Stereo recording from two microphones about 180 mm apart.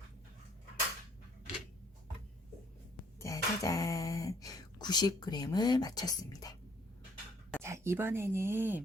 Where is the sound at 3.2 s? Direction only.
20° left (ahead or behind).